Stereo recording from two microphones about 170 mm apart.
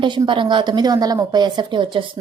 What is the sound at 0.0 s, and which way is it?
A woman's voice, 30° right (ahead or behind).